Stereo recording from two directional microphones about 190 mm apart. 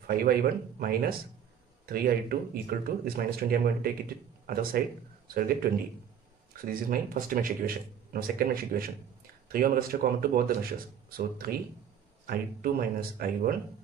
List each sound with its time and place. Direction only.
0.0 s speech: 50° right (ahead or behind)
6.5 s speech: 50° right (ahead or behind)